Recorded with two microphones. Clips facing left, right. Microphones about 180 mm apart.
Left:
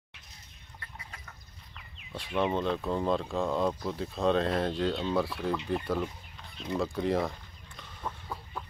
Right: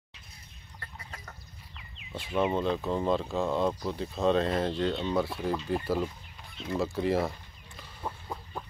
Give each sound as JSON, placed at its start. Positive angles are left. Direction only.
{"t": 0.7, "sound": "chicken", "side_deg": -40}
{"t": 2.1, "sound": "speech", "side_deg": 0}
{"t": 8.0, "sound": "a sound", "side_deg": -25}